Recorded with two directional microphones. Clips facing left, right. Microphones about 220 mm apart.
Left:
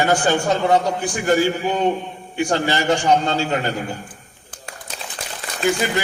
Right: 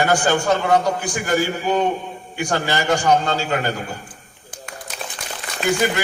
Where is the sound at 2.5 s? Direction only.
20° left (ahead or behind).